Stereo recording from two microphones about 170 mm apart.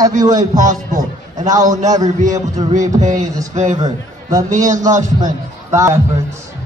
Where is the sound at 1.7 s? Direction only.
20° right (ahead or behind).